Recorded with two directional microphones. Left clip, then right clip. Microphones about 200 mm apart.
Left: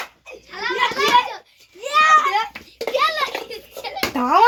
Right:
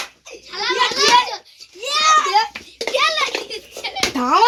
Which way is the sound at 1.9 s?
Centre (ahead or behind).